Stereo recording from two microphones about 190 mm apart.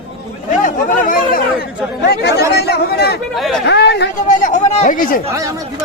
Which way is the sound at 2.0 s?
60° left (ahead or behind).